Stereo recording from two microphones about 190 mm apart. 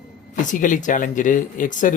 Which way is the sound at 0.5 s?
45° left (ahead or behind).